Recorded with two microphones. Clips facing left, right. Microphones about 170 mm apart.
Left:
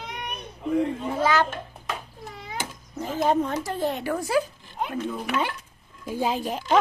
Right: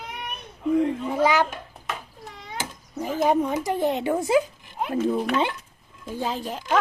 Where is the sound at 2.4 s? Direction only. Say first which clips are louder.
Even; 5° left (ahead or behind).